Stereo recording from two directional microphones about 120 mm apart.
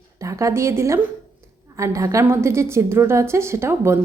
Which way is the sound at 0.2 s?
25° right (ahead or behind).